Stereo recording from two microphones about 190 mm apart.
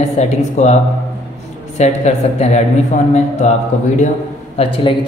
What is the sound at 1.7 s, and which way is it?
Speech, 35° left (ahead or behind).